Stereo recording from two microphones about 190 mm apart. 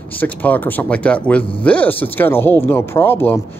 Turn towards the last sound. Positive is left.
turn(degrees=10)  # may be behind; listen again after turning